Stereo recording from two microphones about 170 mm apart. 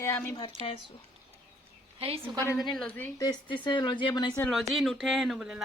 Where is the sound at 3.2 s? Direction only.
25° left (ahead or behind).